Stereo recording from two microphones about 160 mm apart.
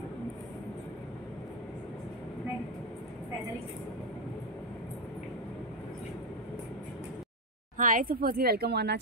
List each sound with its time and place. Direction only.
7.7 s speech: 55° right (ahead or behind); by 8.9 s 90° right